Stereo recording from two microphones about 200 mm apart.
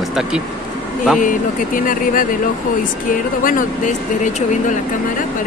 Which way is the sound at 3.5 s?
40° left (ahead or behind).